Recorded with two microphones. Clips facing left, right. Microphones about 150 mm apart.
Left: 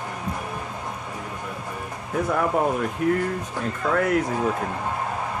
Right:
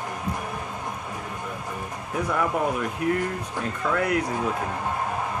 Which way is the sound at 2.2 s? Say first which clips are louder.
Left 3 dB; 45° left (ahead or behind).